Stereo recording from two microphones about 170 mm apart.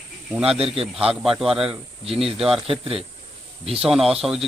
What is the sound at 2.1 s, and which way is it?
Speech, 35° right (ahead or behind).